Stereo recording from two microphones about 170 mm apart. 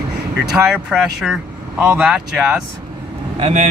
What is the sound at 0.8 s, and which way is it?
Speech, 5° right (ahead or behind).